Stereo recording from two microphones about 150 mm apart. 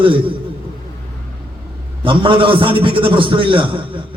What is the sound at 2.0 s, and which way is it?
A man's voice, 35° right (ahead or behind).